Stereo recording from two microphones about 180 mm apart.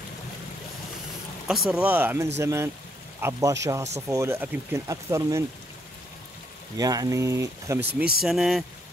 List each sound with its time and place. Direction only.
1.5 s a man's voice: 5° right (ahead or behind)
6.8 s speech: 20° right (ahead or behind)
7.8 s speech: 60° right (ahead or behind)
8.2 s speech: centre (ahead or behind)